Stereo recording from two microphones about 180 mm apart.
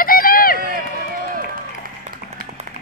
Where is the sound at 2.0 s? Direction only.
45° right (ahead or behind).